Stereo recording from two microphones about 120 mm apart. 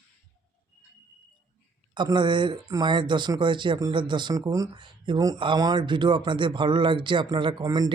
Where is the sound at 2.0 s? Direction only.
40° right (ahead or behind).